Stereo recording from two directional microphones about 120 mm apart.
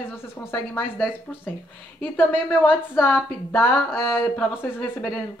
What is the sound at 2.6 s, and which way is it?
Speech, 15° left (ahead or behind).